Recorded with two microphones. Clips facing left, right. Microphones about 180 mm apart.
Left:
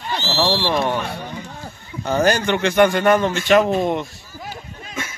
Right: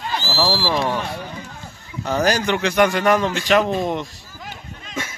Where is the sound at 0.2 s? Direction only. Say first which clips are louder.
Left 3 dB; 10° right (ahead or behind).